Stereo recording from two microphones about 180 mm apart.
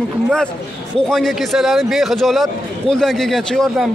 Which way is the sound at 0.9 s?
5° left (ahead or behind).